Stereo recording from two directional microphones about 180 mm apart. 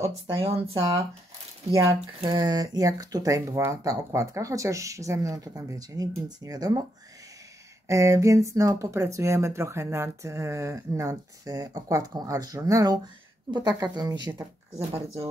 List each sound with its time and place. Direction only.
0.0 s speech: 35° right (ahead or behind)
1.7 s speech: 15° right (ahead or behind)
7.9 s speech: 15° right (ahead or behind)